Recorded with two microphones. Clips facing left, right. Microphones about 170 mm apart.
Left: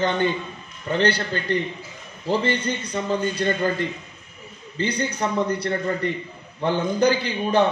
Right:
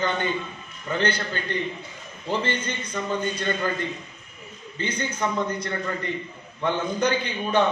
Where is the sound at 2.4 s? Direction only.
35° left (ahead or behind).